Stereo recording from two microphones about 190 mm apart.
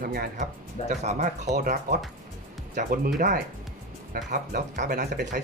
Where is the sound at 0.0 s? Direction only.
50° right (ahead or behind).